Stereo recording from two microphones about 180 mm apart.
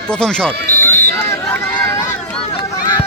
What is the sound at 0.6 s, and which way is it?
Speech, 55° right (ahead or behind).